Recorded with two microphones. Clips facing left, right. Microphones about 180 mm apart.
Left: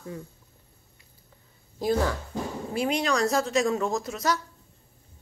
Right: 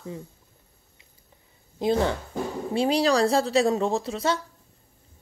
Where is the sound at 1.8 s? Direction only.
25° right (ahead or behind).